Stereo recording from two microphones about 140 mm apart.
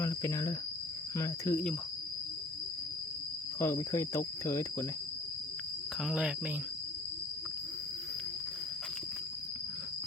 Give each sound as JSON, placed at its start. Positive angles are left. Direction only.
{"t": 0.0, "sound": "cricket", "side_deg": 20}
{"t": 1.1, "sound": "speech", "side_deg": 20}
{"t": 3.6, "sound": "speech", "side_deg": 20}
{"t": 6.0, "sound": "speech", "side_deg": -5}